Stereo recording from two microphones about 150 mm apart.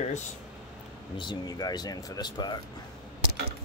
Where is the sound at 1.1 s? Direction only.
30° left (ahead or behind).